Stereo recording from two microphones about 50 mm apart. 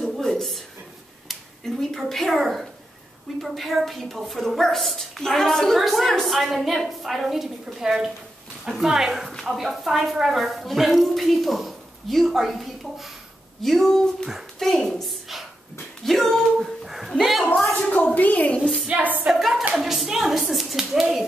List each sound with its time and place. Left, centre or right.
0.0 s a sound: centre
2.0 s a woman's voice: centre
16.1 s a sound: centre
17.2 s a woman's voice: centre
17.7 s a woman's voice: left
18.9 s a woman's voice: right
19.2 s a woman's voice: centre